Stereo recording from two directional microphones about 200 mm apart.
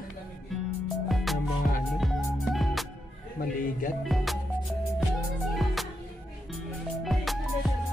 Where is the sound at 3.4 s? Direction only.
45° left (ahead or behind).